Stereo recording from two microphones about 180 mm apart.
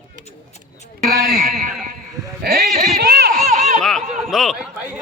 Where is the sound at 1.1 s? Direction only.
55° right (ahead or behind).